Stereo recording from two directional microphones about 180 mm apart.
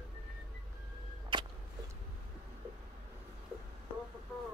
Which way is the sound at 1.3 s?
25° right (ahead or behind).